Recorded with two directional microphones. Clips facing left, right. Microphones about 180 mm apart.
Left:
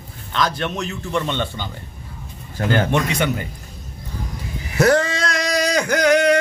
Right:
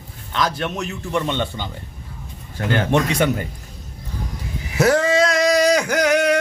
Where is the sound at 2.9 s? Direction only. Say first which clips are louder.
Right 2 dB; 35° right (ahead or behind).